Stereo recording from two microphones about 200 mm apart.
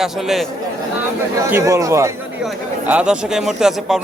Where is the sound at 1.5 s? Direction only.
15° right (ahead or behind).